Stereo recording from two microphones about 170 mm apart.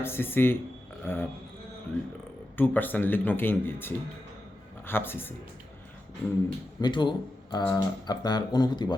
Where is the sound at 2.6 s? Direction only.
10° left (ahead or behind).